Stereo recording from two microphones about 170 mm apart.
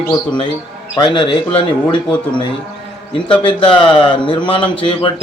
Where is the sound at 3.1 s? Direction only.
30° left (ahead or behind).